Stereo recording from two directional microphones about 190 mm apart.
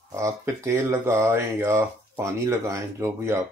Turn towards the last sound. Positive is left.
turn(degrees=-15)  # may be behind; listen again after turning